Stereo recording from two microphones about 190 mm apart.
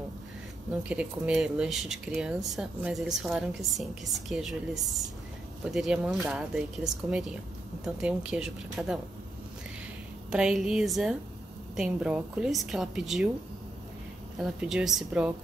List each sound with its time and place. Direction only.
0.8 s speech: 5° right (ahead or behind)
10.3 s speech: 5° right (ahead or behind)
14.4 s speech: 5° right (ahead or behind)